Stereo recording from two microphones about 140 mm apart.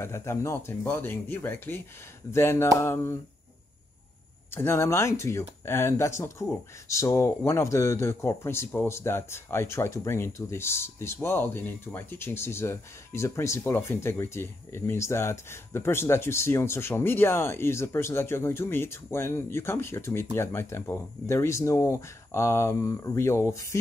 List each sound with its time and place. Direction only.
0.0 s speech: 20° left (ahead or behind)
4.5 s speech: 15° left (ahead or behind)